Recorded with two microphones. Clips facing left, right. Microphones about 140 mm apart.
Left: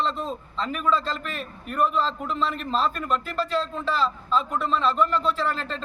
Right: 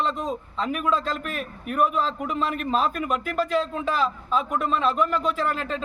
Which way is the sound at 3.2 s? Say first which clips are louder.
Right 3 dB; 50° right (ahead or behind).